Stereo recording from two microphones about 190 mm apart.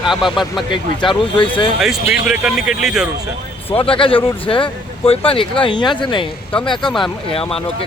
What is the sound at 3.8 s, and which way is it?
Speech, 30° left (ahead or behind).